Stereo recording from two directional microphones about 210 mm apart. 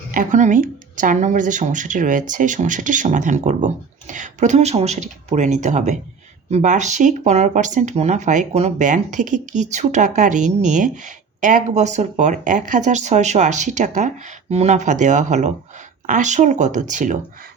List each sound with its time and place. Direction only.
0.1 s speech: 40° right (ahead or behind)